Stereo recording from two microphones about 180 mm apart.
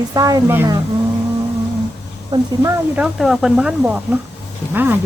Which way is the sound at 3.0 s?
Centre (ahead or behind).